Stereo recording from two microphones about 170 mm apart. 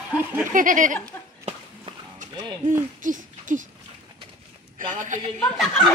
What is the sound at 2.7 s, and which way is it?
Hoot, 50° right (ahead or behind).